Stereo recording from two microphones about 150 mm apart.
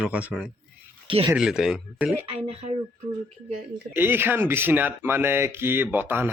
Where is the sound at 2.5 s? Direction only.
45° right (ahead or behind).